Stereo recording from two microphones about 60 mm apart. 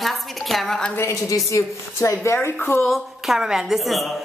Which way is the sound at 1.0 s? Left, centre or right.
Left.